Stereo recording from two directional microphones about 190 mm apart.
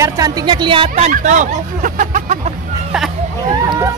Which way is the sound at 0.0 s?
15° right (ahead or behind).